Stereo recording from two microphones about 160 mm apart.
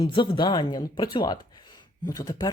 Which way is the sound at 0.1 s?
30° left (ahead or behind).